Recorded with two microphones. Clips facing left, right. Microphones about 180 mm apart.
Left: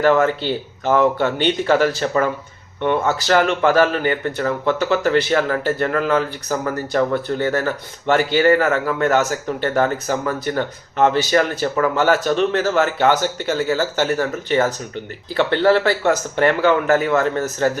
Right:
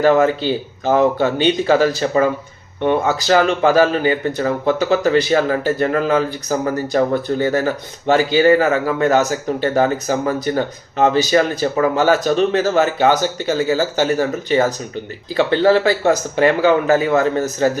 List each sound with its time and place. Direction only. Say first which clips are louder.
0.0 s speech: right 2 dB; 15° right (ahead or behind)